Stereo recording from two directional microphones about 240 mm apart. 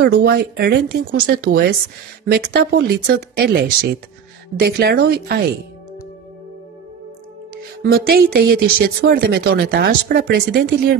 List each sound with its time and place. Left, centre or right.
0.0 s speech: right
7.8 s speech: right